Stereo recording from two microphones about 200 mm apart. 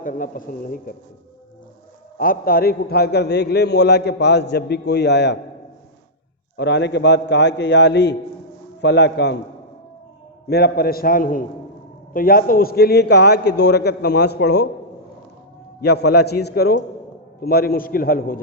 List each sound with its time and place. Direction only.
0.0 s a man's voice: 45° left (ahead or behind)
2.1 s a man's voice: 45° left (ahead or behind)
6.6 s a man's voice: 60° left (ahead or behind)
10.5 s a man's voice: 50° left (ahead or behind)
15.8 s a man's voice: 55° left (ahead or behind)